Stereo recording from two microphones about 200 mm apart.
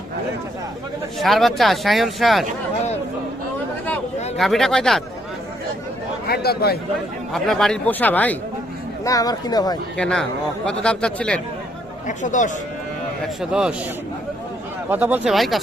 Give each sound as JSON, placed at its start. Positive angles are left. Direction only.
{"t": 1.2, "sound": "speech", "side_deg": 0}
{"t": 4.4, "sound": "speech", "side_deg": 0}
{"t": 6.2, "sound": "speech", "side_deg": 50}
{"t": 7.3, "sound": "speech", "side_deg": 0}
{"t": 10.0, "sound": "speech", "side_deg": 5}
{"t": 12.0, "sound": "speech", "side_deg": 40}
{"t": 13.2, "sound": "speech", "side_deg": -5}
{"t": 14.8, "sound": "speech", "side_deg": -10}